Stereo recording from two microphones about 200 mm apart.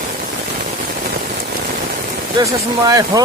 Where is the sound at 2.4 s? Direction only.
15° right (ahead or behind).